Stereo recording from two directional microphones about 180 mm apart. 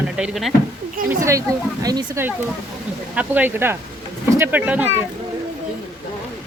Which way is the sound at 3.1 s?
10° right (ahead or behind).